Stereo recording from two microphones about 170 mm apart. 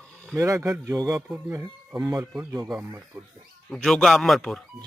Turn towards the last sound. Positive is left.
turn(degrees=0)  # may be behind; listen again after turning